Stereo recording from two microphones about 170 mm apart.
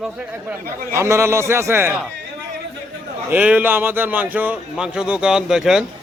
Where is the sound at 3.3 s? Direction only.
10° right (ahead or behind).